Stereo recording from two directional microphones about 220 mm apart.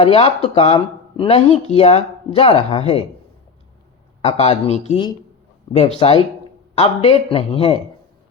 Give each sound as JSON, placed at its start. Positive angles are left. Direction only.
{"t": 0.0, "sound": "speech", "side_deg": 25}
{"t": 4.2, "sound": "speech", "side_deg": 30}